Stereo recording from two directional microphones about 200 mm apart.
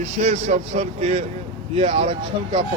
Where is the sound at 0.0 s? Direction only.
35° right (ahead or behind).